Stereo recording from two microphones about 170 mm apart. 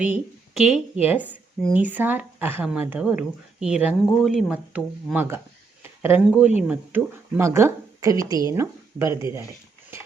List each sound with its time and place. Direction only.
0.0 s a woman's voice: 5° right (ahead or behind)